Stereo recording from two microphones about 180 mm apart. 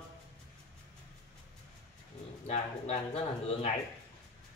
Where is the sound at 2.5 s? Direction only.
35° left (ahead or behind).